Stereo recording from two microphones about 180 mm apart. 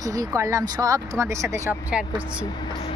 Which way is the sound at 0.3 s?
15° right (ahead or behind).